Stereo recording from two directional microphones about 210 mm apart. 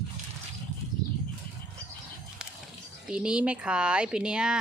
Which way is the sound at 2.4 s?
5° right (ahead or behind).